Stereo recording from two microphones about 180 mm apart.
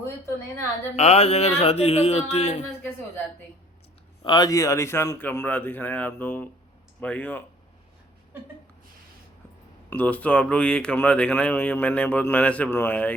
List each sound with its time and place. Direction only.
0.0 s a woman's voice: 15° left (ahead or behind)
0.9 s a sound: 35° left (ahead or behind)
4.2 s speech: 25° left (ahead or behind)
9.9 s speech: 10° left (ahead or behind)